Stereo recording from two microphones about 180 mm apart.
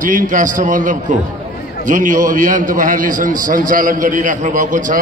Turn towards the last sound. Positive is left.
turn(degrees=-45)  # may be behind; listen again after turning